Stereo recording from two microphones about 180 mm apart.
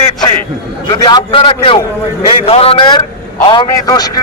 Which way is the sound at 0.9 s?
25° left (ahead or behind).